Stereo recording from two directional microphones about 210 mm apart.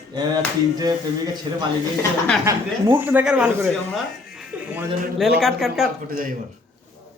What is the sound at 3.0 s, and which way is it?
Speech, 10° right (ahead or behind).